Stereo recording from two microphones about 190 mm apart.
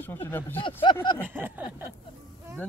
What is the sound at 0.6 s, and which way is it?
Speech, 25° left (ahead or behind).